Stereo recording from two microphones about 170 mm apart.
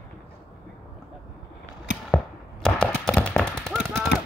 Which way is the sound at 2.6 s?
5° left (ahead or behind).